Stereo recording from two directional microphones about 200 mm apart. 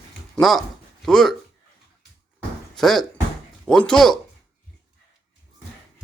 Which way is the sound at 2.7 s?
Centre (ahead or behind).